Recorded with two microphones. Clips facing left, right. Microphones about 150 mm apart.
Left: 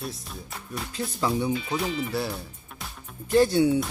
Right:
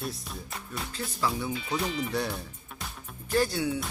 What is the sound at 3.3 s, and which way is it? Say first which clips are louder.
Speech: left 7 dB; 25° left (ahead or behind).